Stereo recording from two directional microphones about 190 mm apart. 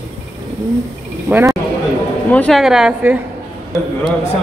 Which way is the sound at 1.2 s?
10° right (ahead or behind).